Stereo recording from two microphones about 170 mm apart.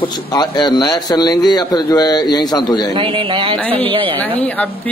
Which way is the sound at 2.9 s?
30° right (ahead or behind).